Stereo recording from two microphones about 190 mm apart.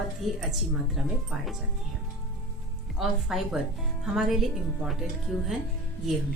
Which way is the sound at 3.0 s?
Centre (ahead or behind).